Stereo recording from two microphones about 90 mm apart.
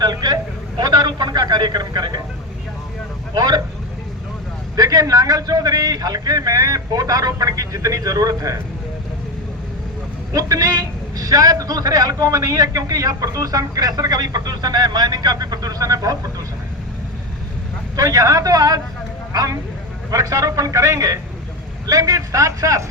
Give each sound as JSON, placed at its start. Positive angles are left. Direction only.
{"t": 0.0, "sound": "a man's voice", "side_deg": -50}
{"t": 3.3, "sound": "speech", "side_deg": -50}
{"t": 4.8, "sound": "a man's voice", "side_deg": -40}
{"t": 10.3, "sound": "a man's voice", "side_deg": -40}
{"t": 17.9, "sound": "a man's voice", "side_deg": -40}